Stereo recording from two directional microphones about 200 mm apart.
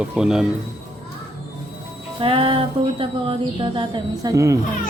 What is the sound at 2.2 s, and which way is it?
A woman's voice, 25° right (ahead or behind).